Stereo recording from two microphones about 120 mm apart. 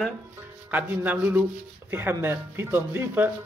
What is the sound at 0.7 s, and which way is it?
Speech, 15° right (ahead or behind).